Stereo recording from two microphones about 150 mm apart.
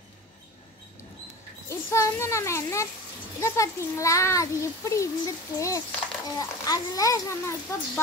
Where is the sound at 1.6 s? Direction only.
20° left (ahead or behind).